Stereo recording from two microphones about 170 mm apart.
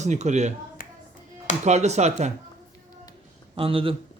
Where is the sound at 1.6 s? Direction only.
40° right (ahead or behind).